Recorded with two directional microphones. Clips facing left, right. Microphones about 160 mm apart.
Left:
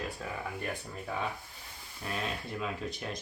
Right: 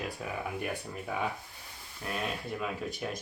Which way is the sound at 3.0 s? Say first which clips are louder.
Right 4 dB; centre (ahead or behind).